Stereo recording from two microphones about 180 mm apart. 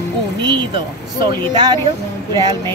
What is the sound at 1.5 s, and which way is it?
Speech, 25° right (ahead or behind).